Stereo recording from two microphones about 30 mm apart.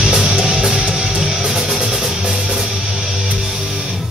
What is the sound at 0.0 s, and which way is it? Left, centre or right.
Music, right.